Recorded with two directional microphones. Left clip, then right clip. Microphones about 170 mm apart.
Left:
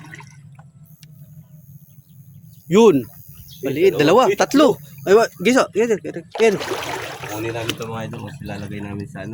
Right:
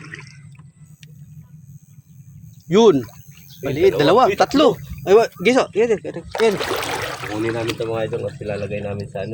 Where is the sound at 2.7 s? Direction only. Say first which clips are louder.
Even; 20° left (ahead or behind).